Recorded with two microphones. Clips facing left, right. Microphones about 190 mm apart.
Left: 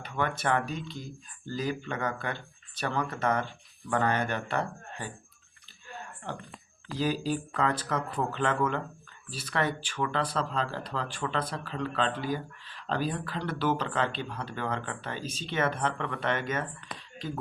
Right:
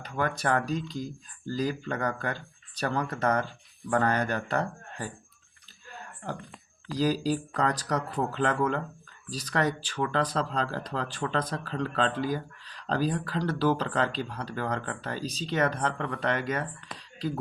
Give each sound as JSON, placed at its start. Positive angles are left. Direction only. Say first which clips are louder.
{"t": 0.0, "sound": "speech", "louder": "right 1 dB", "side_deg": -40}
{"t": 6.9, "sound": "speech", "louder": "right 3 dB", "side_deg": -35}